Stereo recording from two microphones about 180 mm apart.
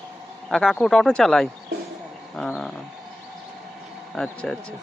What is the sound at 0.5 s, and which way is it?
Speech, centre (ahead or behind).